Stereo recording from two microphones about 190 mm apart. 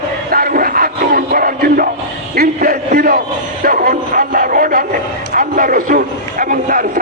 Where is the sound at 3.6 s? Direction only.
50° right (ahead or behind).